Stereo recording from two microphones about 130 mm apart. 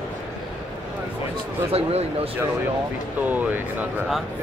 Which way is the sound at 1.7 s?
50° right (ahead or behind).